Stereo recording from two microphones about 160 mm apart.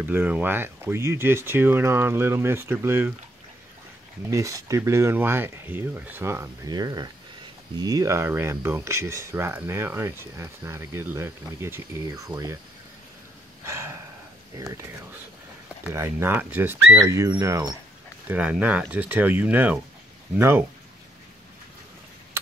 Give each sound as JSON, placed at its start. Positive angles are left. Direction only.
{"t": 0.0, "sound": "speech", "side_deg": -10}
{"t": 4.3, "sound": "speech", "side_deg": -20}
{"t": 13.7, "sound": "a sound", "side_deg": -15}
{"t": 14.5, "sound": "speech", "side_deg": -20}
{"t": 15.9, "sound": "speech", "side_deg": -15}